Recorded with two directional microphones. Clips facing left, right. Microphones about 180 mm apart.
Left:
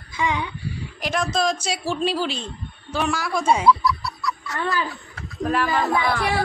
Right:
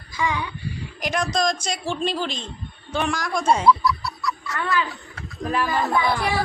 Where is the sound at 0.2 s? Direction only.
20° left (ahead or behind).